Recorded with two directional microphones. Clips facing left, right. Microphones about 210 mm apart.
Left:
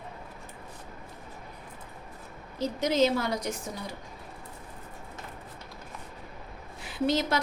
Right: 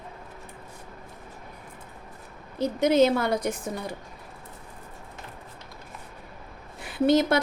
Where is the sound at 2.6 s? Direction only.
55° right (ahead or behind).